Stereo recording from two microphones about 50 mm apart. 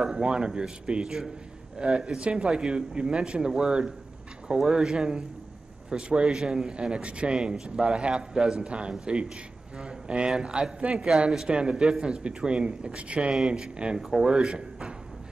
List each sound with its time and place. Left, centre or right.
0.1 s a man's voice: centre